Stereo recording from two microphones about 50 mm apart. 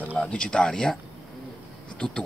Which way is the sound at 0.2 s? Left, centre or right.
Centre.